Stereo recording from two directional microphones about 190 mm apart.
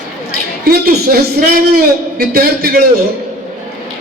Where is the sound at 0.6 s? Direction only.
50° right (ahead or behind).